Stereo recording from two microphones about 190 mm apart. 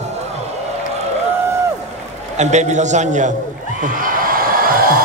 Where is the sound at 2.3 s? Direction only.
40° right (ahead or behind).